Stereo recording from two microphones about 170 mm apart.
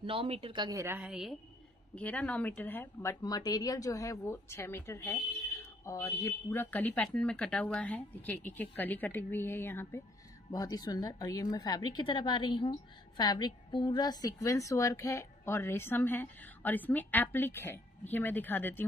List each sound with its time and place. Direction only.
0.0 s a woman's voice: 35° right (ahead or behind); by 1.3 s 5° right (ahead or behind)
2.0 s a woman's voice: 10° left (ahead or behind)